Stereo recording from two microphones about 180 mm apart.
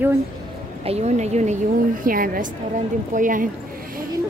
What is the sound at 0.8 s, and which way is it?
Speech, 35° right (ahead or behind).